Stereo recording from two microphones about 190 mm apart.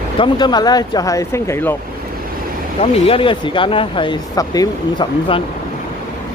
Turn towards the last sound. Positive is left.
turn(degrees=25)  # may be behind; listen again after turning